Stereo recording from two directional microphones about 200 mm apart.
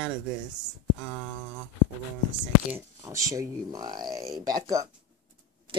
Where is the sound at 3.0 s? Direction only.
15° right (ahead or behind).